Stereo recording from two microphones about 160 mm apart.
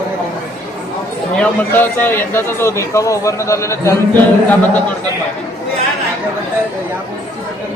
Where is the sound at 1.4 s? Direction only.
10° left (ahead or behind).